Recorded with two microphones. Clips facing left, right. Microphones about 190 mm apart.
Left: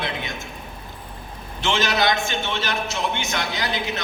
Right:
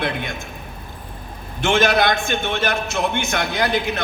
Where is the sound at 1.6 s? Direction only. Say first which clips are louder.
Right 4 dB; 55° right (ahead or behind).